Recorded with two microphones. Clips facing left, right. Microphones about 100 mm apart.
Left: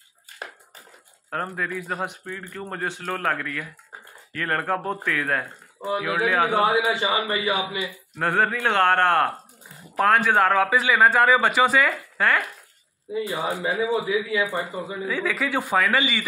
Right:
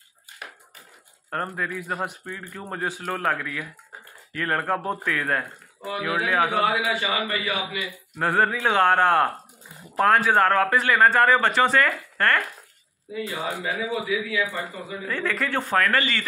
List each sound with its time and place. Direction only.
1.3 s a man's voice: centre (ahead or behind)
6.5 s a man's voice: 30° left (ahead or behind)
8.2 s a man's voice: centre (ahead or behind)
13.1 s a man's voice: 20° left (ahead or behind)
13.6 s a man's voice: 30° left (ahead or behind)
15.0 s a man's voice: 5° left (ahead or behind)